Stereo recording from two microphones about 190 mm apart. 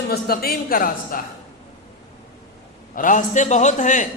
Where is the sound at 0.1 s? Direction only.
55° left (ahead or behind).